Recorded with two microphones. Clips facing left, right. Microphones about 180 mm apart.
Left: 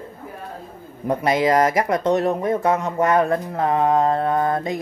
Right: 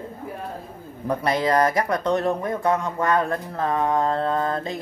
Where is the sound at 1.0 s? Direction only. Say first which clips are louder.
Left 3 dB; 20° left (ahead or behind).